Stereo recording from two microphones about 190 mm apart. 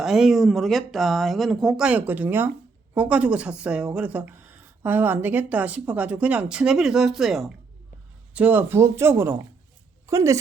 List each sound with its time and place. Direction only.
0.0 s a woman's voice: centre (ahead or behind)